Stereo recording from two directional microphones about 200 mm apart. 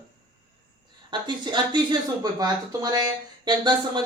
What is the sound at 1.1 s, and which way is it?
Speech, 20° right (ahead or behind).